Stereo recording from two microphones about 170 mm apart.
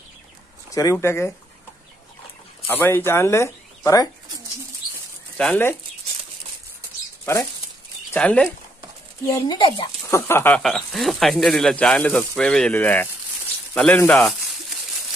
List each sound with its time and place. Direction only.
0.7 s speech: 20° left (ahead or behind)
2.7 s speech: 10° left (ahead or behind)
5.4 s speech: 10° left (ahead or behind)
8.1 s speech: 5° left (ahead or behind)
9.2 s speech: 20° left (ahead or behind)
10.6 s speech: centre (ahead or behind)